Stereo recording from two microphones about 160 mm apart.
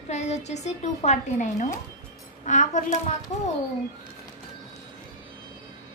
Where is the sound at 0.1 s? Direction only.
45° left (ahead or behind).